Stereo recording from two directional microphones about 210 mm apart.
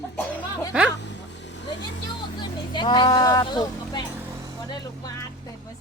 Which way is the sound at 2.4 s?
20° left (ahead or behind).